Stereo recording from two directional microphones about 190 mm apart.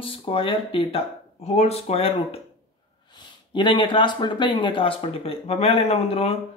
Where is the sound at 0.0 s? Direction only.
30° left (ahead or behind).